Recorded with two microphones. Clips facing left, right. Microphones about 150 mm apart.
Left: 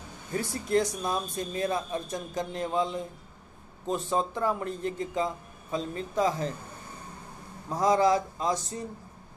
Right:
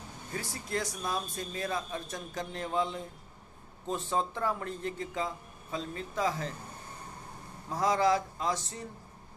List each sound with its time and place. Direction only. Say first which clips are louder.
0.3 s speech: left 9 dB; 25° left (ahead or behind)
7.7 s speech: left 4 dB; 20° left (ahead or behind)